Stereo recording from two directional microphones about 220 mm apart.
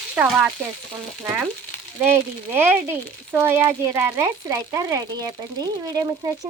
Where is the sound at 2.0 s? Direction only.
10° right (ahead or behind).